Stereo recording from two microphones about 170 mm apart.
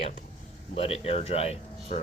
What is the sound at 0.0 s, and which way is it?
Speech, 45° left (ahead or behind).